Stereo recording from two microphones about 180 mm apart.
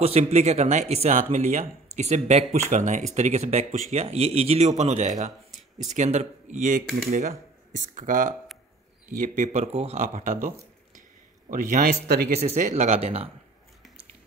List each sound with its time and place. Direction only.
0.0 s speech: 35° right (ahead or behind)
11.7 s speech: 60° right (ahead or behind)
12.4 s speech: 40° right (ahead or behind)